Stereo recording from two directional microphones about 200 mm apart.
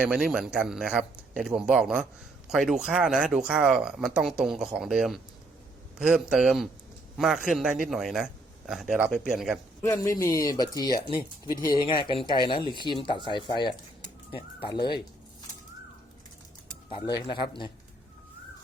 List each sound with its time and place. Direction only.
0.0 s speech: centre (ahead or behind)
9.8 s speech: 15° left (ahead or behind)
17.2 s speech: 25° left (ahead or behind)